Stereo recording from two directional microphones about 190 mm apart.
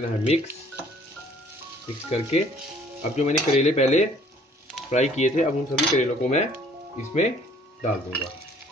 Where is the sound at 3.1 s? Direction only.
35° left (ahead or behind).